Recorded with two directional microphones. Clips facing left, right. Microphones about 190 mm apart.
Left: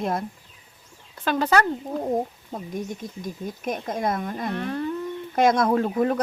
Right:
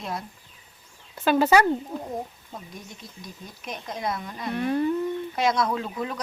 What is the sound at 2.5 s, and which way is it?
Speech, 50° left (ahead or behind).